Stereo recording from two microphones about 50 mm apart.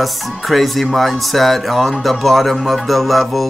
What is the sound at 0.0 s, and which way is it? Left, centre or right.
Speech, centre.